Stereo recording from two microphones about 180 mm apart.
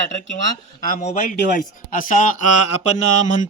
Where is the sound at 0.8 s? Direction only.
45° left (ahead or behind).